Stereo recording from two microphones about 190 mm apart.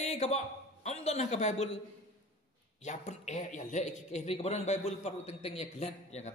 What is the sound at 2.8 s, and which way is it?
Speech, 35° left (ahead or behind).